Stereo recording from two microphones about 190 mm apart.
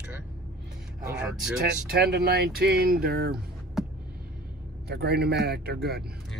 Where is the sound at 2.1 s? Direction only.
55° right (ahead or behind).